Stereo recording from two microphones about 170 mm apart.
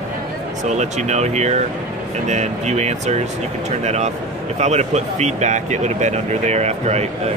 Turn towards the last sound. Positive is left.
turn(degrees=-40)  # may be behind; listen again after turning